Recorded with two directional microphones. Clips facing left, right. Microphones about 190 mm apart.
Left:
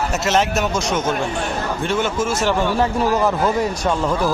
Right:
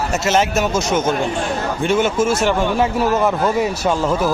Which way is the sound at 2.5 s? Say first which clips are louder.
Right 1 dB; 5° right (ahead or behind).